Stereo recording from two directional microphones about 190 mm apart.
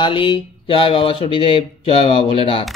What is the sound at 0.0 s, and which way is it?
Speech, 25° left (ahead or behind).